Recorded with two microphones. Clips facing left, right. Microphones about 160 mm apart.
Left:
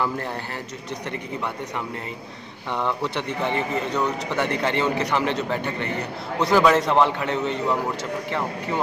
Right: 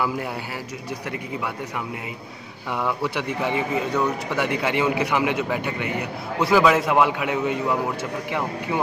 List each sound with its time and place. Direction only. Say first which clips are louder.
2.7 s a man's voice: even; 5° right (ahead or behind)